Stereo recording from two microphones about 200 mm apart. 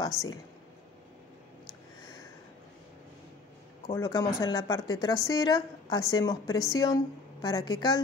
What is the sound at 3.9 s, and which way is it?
A woman's voice, 15° left (ahead or behind).